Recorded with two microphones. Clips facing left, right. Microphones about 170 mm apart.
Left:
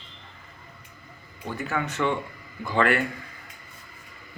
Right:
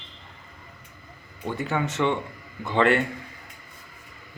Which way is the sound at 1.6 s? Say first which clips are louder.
Right 2 dB; 20° right (ahead or behind).